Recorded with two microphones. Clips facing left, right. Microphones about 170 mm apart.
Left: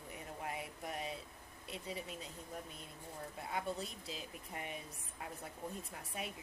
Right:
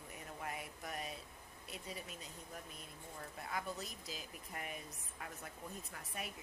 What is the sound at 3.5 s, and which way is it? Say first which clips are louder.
Speech: left 3 dB; 30° left (ahead or behind).